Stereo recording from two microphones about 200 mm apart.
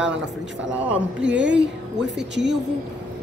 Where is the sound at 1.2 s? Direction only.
65° right (ahead or behind).